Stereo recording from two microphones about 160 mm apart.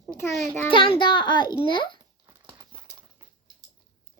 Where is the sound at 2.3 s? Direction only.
25° right (ahead or behind).